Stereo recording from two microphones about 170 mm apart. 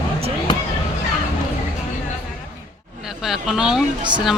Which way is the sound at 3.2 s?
5° right (ahead or behind).